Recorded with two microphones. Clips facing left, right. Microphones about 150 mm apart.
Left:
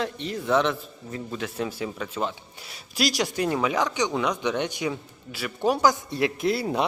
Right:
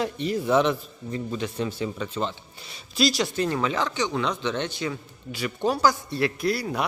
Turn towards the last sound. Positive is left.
turn(degrees=25)  # may be behind; listen again after turning